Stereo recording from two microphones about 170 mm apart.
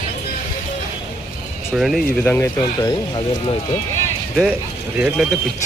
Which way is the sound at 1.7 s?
Centre (ahead or behind).